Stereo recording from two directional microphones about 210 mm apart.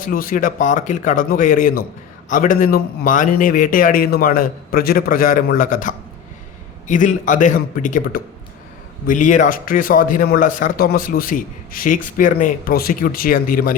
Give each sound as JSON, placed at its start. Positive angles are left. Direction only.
{"t": 0.0, "sound": "a man's voice", "side_deg": 40}